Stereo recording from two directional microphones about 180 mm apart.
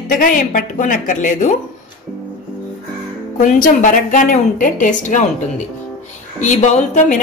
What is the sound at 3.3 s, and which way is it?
A woman's voice, 45° left (ahead or behind).